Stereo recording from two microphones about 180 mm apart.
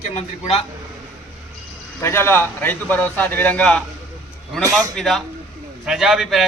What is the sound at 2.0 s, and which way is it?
A man's voice, 15° left (ahead or behind).